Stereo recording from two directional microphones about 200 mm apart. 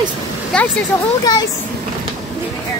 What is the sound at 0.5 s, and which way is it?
Speech, 5° left (ahead or behind).